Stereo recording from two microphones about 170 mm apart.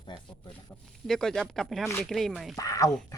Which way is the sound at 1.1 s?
5° left (ahead or behind).